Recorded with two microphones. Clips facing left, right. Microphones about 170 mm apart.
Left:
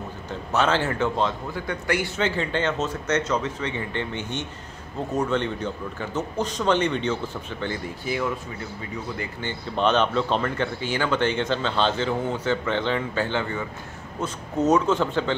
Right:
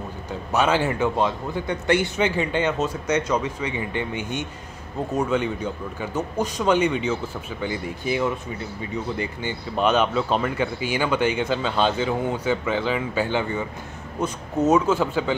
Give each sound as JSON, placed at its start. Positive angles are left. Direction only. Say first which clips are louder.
{"t": 0.5, "sound": "speech", "louder": "right 2 dB", "side_deg": -10}